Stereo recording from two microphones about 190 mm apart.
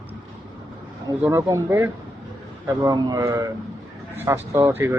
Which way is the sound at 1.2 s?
15° right (ahead or behind).